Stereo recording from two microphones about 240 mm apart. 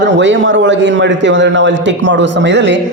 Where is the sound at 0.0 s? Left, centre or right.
Right.